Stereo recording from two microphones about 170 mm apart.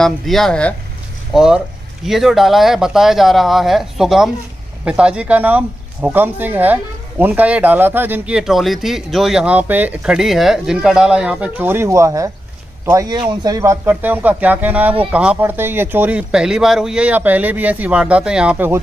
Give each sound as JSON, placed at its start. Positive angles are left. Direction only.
{"t": 0.0, "sound": "speech", "side_deg": 0}